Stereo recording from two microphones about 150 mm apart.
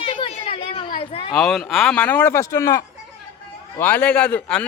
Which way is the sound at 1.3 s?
Centre (ahead or behind).